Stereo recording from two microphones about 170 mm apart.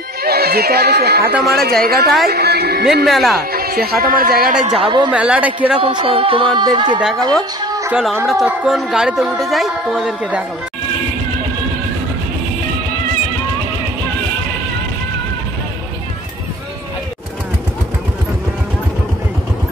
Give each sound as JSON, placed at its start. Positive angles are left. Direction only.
{"t": 0.2, "sound": "speech", "side_deg": -65}
{"t": 3.1, "sound": "speech", "side_deg": 0}
{"t": 3.5, "sound": "speech", "side_deg": -65}
{"t": 4.7, "sound": "speech", "side_deg": -25}
{"t": 5.1, "sound": "speech", "side_deg": -5}
{"t": 5.8, "sound": "speech", "side_deg": -35}
{"t": 7.6, "sound": "music", "side_deg": -20}
{"t": 7.9, "sound": "speech", "side_deg": 0}